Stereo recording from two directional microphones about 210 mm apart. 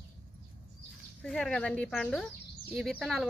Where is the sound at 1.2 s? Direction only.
5° left (ahead or behind).